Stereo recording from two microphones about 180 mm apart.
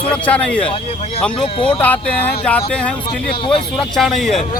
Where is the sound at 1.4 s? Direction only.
30° left (ahead or behind).